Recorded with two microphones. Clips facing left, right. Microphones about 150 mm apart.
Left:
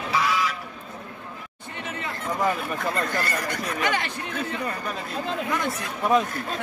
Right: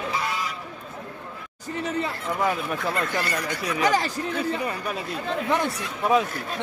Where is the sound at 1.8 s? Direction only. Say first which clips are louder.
Right 7 dB; 35° right (ahead or behind).